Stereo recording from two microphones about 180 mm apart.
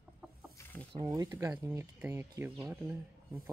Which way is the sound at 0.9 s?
20° right (ahead or behind).